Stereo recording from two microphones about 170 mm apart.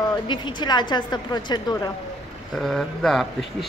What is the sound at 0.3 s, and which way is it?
A woman's voice, 25° left (ahead or behind).